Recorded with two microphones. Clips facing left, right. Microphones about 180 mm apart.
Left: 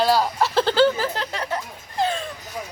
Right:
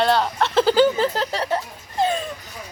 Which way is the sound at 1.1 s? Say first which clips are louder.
Right 4 dB; 30° right (ahead or behind).